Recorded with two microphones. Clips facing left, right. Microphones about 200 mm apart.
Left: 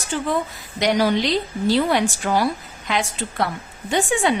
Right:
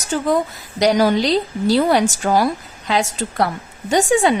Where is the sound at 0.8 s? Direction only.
40° right (ahead or behind).